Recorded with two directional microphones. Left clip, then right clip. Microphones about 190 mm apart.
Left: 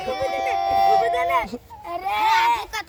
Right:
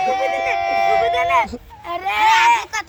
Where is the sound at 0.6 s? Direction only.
25° right (ahead or behind).